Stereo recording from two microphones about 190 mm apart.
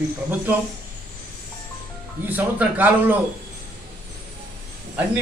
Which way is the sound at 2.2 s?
10° right (ahead or behind).